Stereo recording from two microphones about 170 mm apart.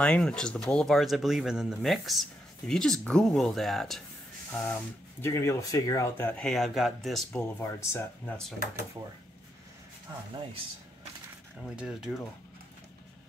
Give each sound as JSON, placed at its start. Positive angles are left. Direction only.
{"t": 0.0, "sound": "speech", "side_deg": 5}
{"t": 5.2, "sound": "speech", "side_deg": 15}
{"t": 7.5, "sound": "speech", "side_deg": 15}
{"t": 11.7, "sound": "speech", "side_deg": -5}